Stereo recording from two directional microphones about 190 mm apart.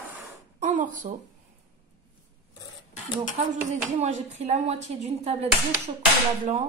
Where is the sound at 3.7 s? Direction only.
35° right (ahead or behind).